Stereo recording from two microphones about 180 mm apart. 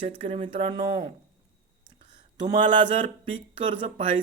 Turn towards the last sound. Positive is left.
turn(degrees=-30)  # may be behind; listen again after turning